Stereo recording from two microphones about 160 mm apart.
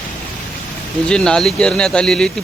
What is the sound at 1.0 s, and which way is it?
Speech, 5° left (ahead or behind).